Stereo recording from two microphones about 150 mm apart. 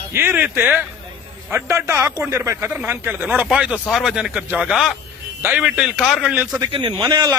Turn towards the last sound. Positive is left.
turn(degrees=-25)  # may be behind; listen again after turning